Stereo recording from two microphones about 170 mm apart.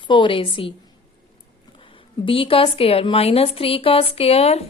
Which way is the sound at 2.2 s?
30° left (ahead or behind).